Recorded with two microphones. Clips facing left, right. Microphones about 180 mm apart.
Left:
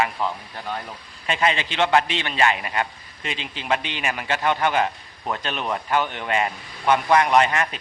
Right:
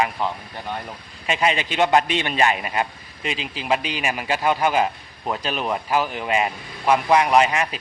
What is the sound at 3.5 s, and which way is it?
A man's voice, 5° right (ahead or behind).